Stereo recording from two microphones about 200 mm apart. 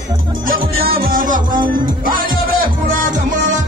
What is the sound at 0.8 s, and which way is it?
Music, 45° right (ahead or behind).